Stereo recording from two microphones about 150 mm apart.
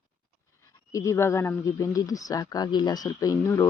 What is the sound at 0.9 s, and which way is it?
Speech, 20° left (ahead or behind).